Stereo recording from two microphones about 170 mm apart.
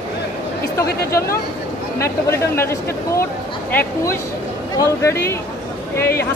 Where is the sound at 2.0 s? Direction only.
15° left (ahead or behind).